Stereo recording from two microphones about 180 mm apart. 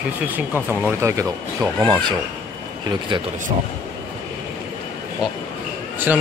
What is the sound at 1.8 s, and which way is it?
Speech, 25° right (ahead or behind).